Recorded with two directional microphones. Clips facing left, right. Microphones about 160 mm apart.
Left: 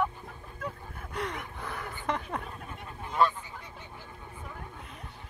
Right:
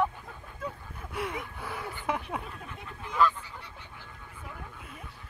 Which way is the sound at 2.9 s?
30° left (ahead or behind).